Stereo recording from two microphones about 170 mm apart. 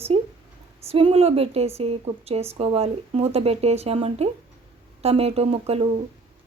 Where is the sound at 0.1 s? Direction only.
35° right (ahead or behind).